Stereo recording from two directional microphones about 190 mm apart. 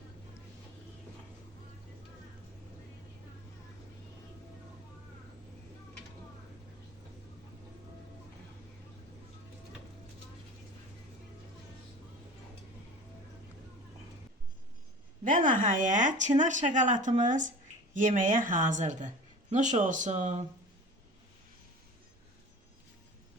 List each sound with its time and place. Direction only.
15.2 s speech: 45° right (ahead or behind)